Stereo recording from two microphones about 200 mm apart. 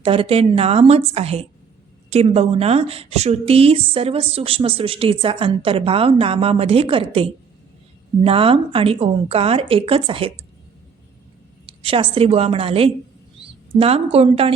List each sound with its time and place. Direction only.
0.0 s a woman's voice: 30° right (ahead or behind)
11.6 s a woman's voice: 25° right (ahead or behind)